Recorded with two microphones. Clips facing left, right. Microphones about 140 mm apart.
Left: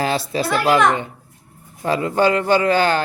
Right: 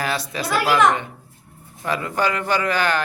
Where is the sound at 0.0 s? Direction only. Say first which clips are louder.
Left 5 dB; 30° left (ahead or behind).